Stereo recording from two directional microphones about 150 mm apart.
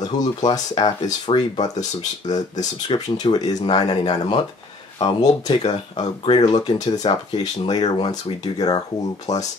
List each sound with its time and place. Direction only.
0.2 s speech: 30° left (ahead or behind)
8.1 s speech: 25° left (ahead or behind)
9.3 s speech: 50° left (ahead or behind)